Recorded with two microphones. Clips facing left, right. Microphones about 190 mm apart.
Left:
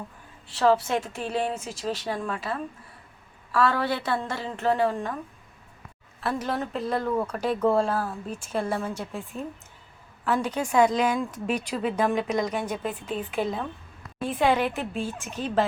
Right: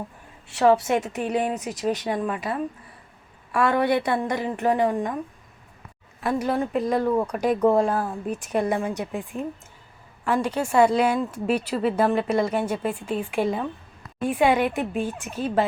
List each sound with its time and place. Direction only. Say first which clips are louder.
1.2 s speech: right 4 dB; 15° right (ahead or behind)
6.1 s speech: right 4 dB; 10° right (ahead or behind)